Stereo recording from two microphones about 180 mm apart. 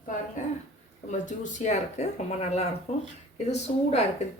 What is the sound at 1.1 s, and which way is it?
Speech, 45° left (ahead or behind).